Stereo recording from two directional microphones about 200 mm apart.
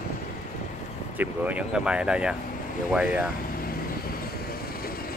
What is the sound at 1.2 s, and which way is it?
Speech, 10° right (ahead or behind).